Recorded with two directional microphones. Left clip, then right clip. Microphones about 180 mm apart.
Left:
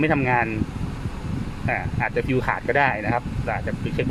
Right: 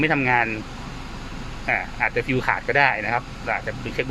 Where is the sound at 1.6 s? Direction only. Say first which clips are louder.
Right 3 dB; 10° left (ahead or behind).